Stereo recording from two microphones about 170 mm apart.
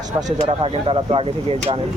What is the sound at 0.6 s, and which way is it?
Speech, 30° right (ahead or behind).